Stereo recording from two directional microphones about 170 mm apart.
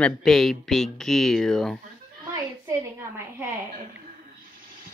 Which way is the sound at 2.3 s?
20° right (ahead or behind).